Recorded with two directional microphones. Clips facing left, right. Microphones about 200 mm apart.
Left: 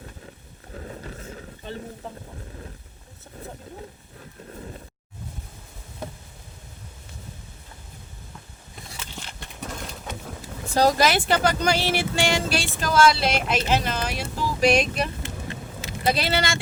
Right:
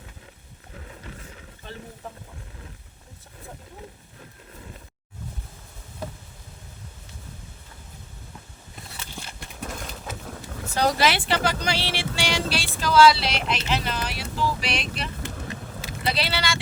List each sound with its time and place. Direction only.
0.7 s vehicle: 40° left (ahead or behind)
9.1 s a sound: 5° right (ahead or behind)
10.8 s speech: 40° left (ahead or behind)